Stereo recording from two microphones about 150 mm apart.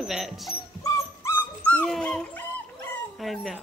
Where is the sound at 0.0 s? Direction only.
Centre (ahead or behind).